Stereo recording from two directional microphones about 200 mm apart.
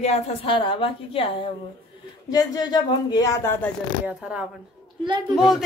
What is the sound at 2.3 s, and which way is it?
Speech, 20° left (ahead or behind).